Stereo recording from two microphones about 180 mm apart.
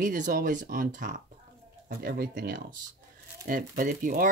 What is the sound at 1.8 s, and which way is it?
Speech, 55° right (ahead or behind).